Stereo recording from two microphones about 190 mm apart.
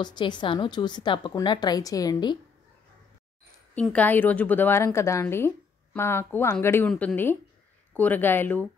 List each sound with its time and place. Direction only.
0.0 s a woman's voice: 25° left (ahead or behind)
3.7 s a woman's voice: 5° left (ahead or behind)